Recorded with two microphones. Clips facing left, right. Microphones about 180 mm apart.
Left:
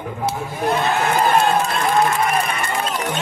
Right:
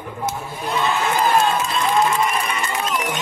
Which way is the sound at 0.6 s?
60° left (ahead or behind).